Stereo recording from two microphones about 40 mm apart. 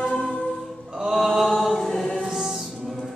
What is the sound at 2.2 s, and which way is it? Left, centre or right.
Music, centre.